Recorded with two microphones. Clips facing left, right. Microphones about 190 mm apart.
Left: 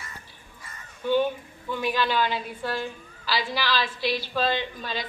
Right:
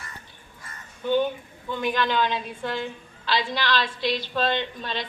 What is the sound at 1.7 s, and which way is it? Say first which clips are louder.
A woman's voice: right 1 dB; 5° left (ahead or behind).